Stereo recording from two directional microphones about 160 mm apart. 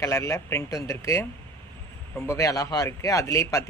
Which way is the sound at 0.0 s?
15° left (ahead or behind).